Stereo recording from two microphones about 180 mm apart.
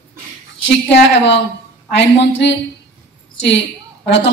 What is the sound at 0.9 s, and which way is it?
Speech, 75° left (ahead or behind).